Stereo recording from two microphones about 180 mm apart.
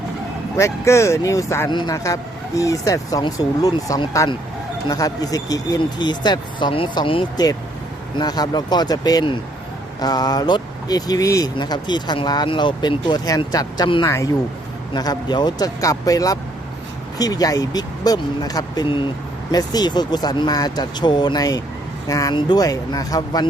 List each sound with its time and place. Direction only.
0.5 s speech: 15° left (ahead or behind)